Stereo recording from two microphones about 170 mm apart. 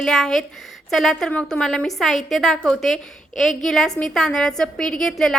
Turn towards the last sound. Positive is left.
turn(degrees=5)  # may be behind; listen again after turning